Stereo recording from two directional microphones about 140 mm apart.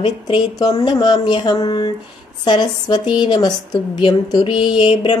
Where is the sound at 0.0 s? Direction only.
30° left (ahead or behind).